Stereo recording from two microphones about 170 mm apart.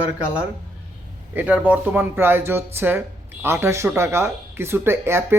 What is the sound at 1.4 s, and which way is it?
Speech, 10° right (ahead or behind).